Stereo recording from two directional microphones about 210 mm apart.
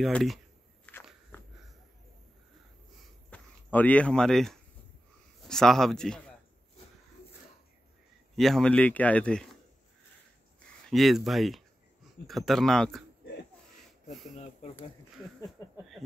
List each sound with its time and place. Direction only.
0.0 s speech: centre (ahead or behind)
0.9 s walk: 5° left (ahead or behind)
1.3 s a sound: 10° left (ahead or behind)
3.3 s speech: 5° left (ahead or behind)
8.4 s speech: centre (ahead or behind)
10.9 s speech: centre (ahead or behind)
13.2 s a sound: 50° left (ahead or behind)
14.3 s speech: 30° left (ahead or behind)